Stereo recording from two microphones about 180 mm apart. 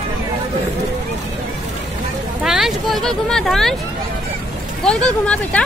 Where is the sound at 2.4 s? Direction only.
Centre (ahead or behind).